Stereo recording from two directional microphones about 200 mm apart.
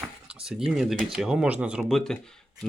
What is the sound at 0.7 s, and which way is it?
Speech, centre (ahead or behind).